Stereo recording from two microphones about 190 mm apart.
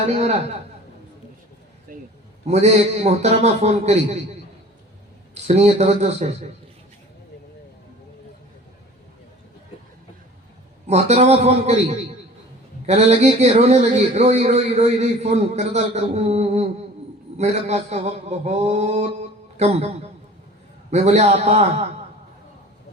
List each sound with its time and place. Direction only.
0.1 s speech: 35° right (ahead or behind)
1.9 s vehicle: 50° right (ahead or behind)
2.5 s speech: 35° right (ahead or behind)
5.3 s speech: 35° right (ahead or behind)
10.8 s speech: 35° right (ahead or behind)
20.9 s speech: 35° right (ahead or behind)